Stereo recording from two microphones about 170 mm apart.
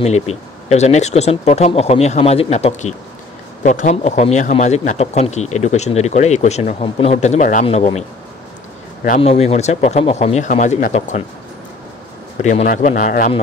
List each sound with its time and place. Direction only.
0.0 s speech: 40° left (ahead or behind)
9.2 s speech: 35° left (ahead or behind)
12.4 s a man's voice: 45° left (ahead or behind)